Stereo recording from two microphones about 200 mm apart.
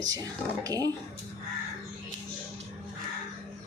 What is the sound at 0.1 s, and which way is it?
Speech, 20° right (ahead or behind).